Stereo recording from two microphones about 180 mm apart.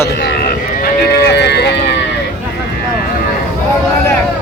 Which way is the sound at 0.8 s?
65° left (ahead or behind).